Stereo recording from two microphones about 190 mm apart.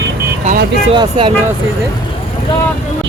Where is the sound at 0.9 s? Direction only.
25° right (ahead or behind).